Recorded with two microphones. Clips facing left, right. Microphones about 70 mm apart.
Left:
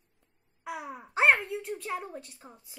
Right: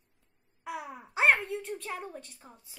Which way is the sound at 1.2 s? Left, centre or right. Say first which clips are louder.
Left 1 dB; centre.